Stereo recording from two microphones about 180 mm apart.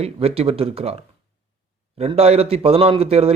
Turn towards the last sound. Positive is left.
turn(degrees=-35)  # may be behind; listen again after turning